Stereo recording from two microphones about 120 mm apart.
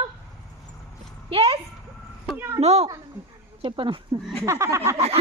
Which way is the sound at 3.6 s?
45° right (ahead or behind).